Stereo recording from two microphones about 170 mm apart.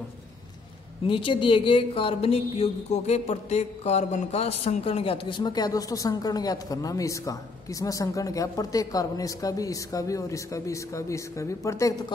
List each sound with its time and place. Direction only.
1.0 s a woman's voice: 30° left (ahead or behind)